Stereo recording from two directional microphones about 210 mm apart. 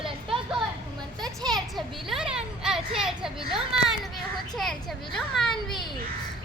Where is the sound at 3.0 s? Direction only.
5° right (ahead or behind).